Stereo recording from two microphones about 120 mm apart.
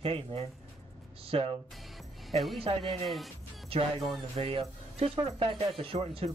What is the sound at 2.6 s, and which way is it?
Speech, 55° right (ahead or behind).